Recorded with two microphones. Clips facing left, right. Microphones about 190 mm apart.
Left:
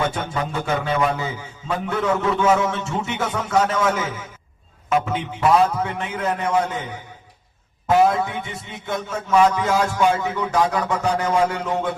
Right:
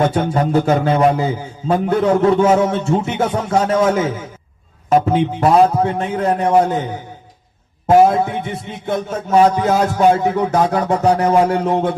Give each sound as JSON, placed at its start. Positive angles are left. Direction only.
{"t": 0.0, "sound": "a man's voice", "side_deg": -40}
{"t": 4.9, "sound": "a man's voice", "side_deg": -40}
{"t": 8.0, "sound": "a man's voice", "side_deg": -30}